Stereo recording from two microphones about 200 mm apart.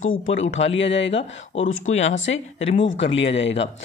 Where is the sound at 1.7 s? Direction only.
80° left; by 3.1 s 65° left (ahead or behind).